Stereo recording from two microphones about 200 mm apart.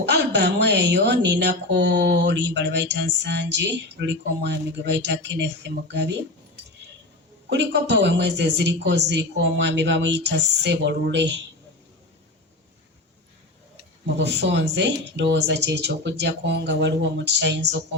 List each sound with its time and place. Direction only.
0.0 s a woman's voice: 60° right (ahead or behind)
7.5 s a woman's voice: 60° right (ahead or behind)
14.2 s a woman's voice: 60° right (ahead or behind)